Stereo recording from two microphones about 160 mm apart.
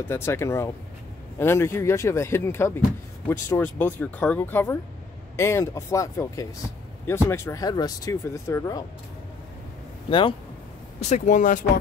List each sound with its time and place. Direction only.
0.1 s speech: 15° left (ahead or behind)
10.0 s speech: 30° left (ahead or behind)
11.0 s speech: 45° left (ahead or behind)